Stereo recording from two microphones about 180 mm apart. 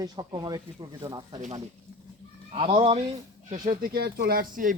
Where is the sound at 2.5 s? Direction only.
30° right (ahead or behind).